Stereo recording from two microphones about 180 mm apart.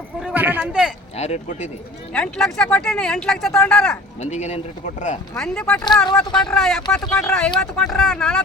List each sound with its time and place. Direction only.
0.2 s a sound: 5° right (ahead or behind)
1.1 s speech: 35° left (ahead or behind)
2.1 s speech: 5° left (ahead or behind)
4.2 s speech: 40° left (ahead or behind)
5.4 s speech: 5° left (ahead or behind)